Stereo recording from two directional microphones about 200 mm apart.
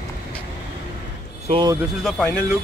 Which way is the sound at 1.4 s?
25° right (ahead or behind).